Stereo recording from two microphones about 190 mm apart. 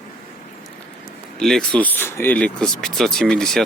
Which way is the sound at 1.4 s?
Centre (ahead or behind).